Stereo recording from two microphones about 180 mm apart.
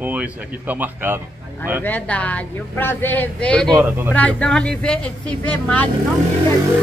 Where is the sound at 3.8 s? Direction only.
10° right (ahead or behind).